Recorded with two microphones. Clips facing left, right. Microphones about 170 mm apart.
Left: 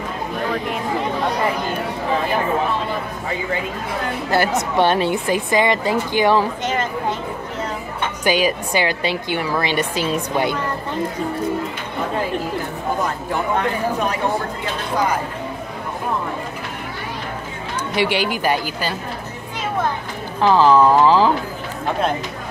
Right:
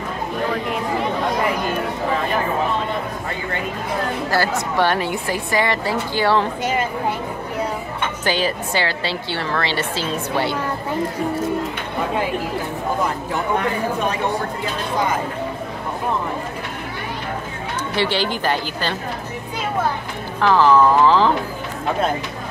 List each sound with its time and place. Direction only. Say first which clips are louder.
4.3 s speech: left 5 dB; 20° left (ahead or behind)
6.6 s speech: right 1 dB; 10° right (ahead or behind)
8.2 s a woman's voice: left 4 dB; 15° left (ahead or behind)
17.9 s a woman's voice: left 1 dB; 15° left (ahead or behind)
20.3 s a woman's voice: left 1 dB; 15° left (ahead or behind)